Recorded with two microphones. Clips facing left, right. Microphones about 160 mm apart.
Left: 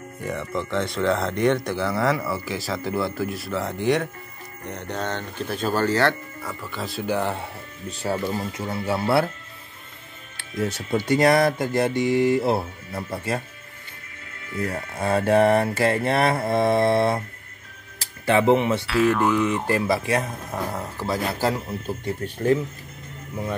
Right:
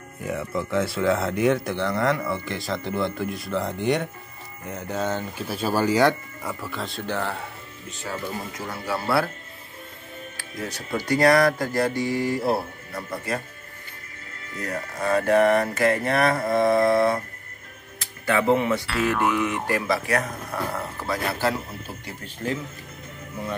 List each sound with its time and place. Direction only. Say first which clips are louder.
0.2 s speech: even; 5° right (ahead or behind)
6.7 s speech: left 6 dB; 5° left (ahead or behind); by 7.4 s 20° left (ahead or behind)
7.9 s speech: left 6 dB; 35° left (ahead or behind)
10.3 s speech: left 8 dB; 25° left (ahead or behind)
14.6 s speech: left 2 dB; 30° left (ahead or behind)
18.9 s speech: left 4 dB; centre (ahead or behind)
19.6 s speech: left 2 dB; 25° left (ahead or behind)
20.7 s speech: left 2 dB; 15° left (ahead or behind)